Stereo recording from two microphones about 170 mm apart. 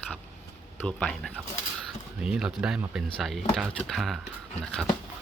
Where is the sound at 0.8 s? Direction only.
5° left (ahead or behind).